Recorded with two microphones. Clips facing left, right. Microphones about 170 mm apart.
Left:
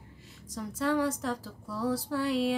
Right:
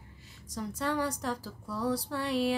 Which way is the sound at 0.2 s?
Centre (ahead or behind).